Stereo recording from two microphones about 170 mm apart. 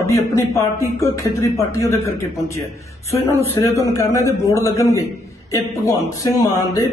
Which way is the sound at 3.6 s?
20° left (ahead or behind).